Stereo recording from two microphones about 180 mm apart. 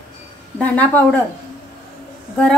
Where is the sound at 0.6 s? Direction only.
10° left (ahead or behind).